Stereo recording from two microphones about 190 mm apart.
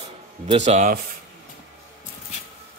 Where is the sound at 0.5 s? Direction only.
40° right (ahead or behind).